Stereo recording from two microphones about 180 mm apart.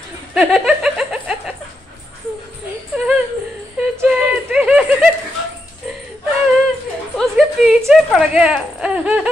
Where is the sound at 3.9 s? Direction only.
5° right (ahead or behind).